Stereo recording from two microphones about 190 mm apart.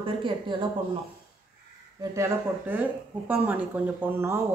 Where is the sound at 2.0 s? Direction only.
15° right (ahead or behind).